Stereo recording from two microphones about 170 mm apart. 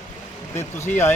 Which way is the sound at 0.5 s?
15° left (ahead or behind).